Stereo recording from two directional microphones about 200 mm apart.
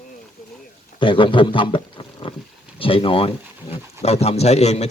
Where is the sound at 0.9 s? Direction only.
25° left (ahead or behind).